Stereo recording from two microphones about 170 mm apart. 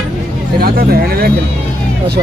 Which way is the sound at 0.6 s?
65° right (ahead or behind).